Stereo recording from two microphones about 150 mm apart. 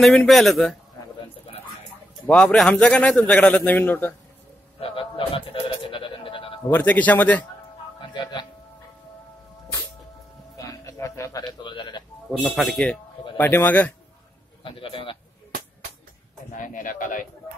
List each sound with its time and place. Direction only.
0.0 s speech: 5° left (ahead or behind)
2.2 s a man's voice: 5° left (ahead or behind)
4.7 s sheep: 40° left (ahead or behind)
6.7 s a man's voice: 10° left (ahead or behind)
8.1 s speech: 30° left (ahead or behind)
10.6 s music: 20° left (ahead or behind)
12.3 s a man's voice: centre (ahead or behind)
14.6 s a man's voice: 35° left (ahead or behind)
16.5 s speech: 60° left (ahead or behind)